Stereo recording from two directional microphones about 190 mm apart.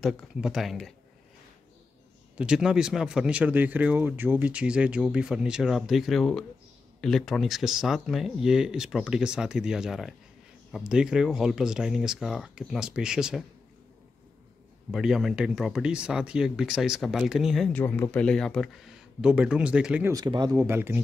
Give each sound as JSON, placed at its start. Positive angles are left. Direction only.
{"t": 0.0, "sound": "speech", "side_deg": 0}
{"t": 2.3, "sound": "speech", "side_deg": -5}
{"t": 14.9, "sound": "speech", "side_deg": 0}
{"t": 20.1, "sound": "speech", "side_deg": -20}